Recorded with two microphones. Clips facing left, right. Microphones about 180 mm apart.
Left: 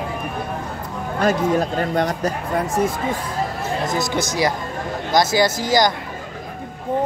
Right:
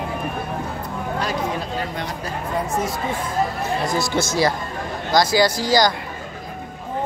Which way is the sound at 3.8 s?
20° left (ahead or behind).